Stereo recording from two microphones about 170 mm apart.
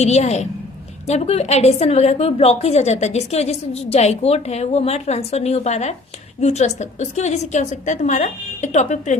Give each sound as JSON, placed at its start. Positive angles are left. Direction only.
{"t": 0.0, "sound": "a woman's voice", "side_deg": 40}